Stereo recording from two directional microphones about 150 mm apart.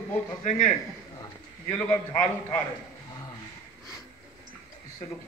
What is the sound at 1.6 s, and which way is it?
Speech, 10° left (ahead or behind).